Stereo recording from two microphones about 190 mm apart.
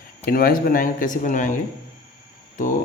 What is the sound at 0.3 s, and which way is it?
Speech, 50° left (ahead or behind).